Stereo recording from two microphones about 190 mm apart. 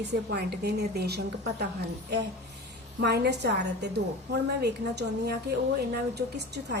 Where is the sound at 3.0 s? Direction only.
60° right (ahead or behind).